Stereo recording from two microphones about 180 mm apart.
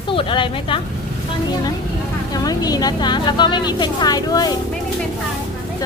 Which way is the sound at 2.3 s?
20° left (ahead or behind).